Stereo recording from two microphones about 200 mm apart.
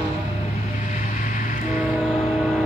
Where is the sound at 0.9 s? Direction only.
40° left (ahead or behind).